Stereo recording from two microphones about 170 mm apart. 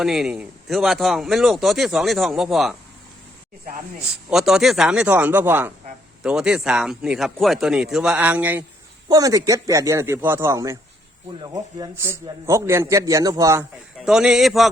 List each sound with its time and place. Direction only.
0.0 s speech: centre (ahead or behind)
4.3 s speech: 5° right (ahead or behind)
9.0 s a man's voice: 20° right (ahead or behind)
14.0 s speech: 5° right (ahead or behind)